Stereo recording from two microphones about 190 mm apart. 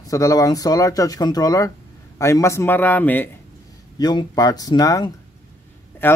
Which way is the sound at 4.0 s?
20° left (ahead or behind).